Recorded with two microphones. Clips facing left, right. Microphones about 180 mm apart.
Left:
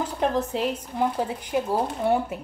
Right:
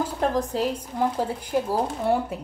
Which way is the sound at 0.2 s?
Centre (ahead or behind).